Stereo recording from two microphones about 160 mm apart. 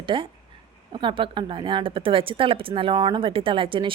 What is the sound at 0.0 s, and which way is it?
Speech, 30° right (ahead or behind).